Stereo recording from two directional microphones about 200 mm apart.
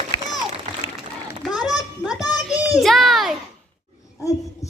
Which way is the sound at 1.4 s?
Centre (ahead or behind).